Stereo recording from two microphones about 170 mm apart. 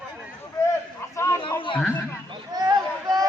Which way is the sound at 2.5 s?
20° right (ahead or behind).